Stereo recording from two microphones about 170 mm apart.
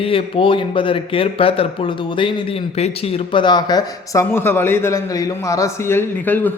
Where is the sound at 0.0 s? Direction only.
30° left (ahead or behind).